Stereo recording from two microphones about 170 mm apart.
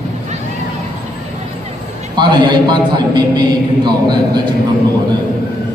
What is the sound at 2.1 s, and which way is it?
A man's voice, 25° right (ahead or behind).